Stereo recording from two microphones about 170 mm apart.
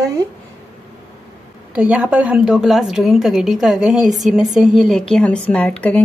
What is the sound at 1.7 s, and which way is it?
A woman's voice, 10° right (ahead or behind).